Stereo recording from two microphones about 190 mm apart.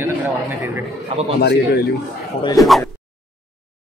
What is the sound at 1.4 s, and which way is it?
Speech, 60° left (ahead or behind).